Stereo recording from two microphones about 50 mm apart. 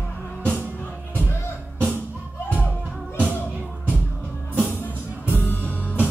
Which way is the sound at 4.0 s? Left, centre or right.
Left.